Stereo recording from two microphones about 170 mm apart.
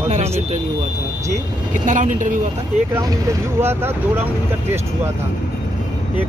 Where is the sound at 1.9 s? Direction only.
45° right (ahead or behind).